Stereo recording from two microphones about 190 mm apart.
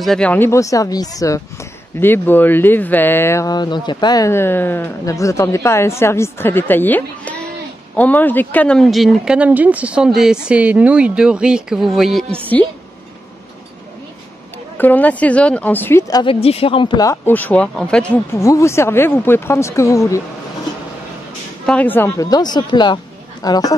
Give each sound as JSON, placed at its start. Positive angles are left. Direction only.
{"t": 0.0, "sound": "speech", "side_deg": 5}
{"t": 14.8, "sound": "speech", "side_deg": 10}
{"t": 21.6, "sound": "speech", "side_deg": 10}